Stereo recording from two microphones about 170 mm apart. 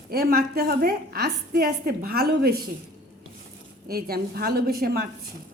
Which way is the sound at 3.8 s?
60° right (ahead or behind).